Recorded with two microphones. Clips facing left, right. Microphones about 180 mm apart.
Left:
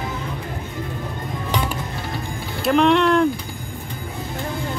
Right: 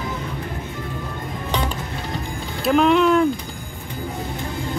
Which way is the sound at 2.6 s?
5° right (ahead or behind).